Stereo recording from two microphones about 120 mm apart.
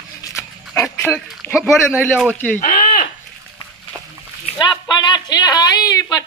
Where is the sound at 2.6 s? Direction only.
90° left.